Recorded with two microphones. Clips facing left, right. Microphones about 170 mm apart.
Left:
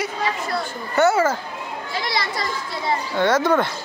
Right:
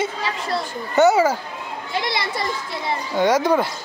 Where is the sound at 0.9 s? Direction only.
15° right (ahead or behind).